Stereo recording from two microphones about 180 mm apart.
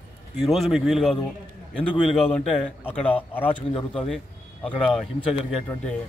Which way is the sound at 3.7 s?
30° left (ahead or behind).